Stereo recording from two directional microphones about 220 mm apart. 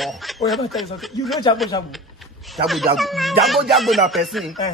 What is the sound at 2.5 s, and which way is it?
Speech, centre (ahead or behind).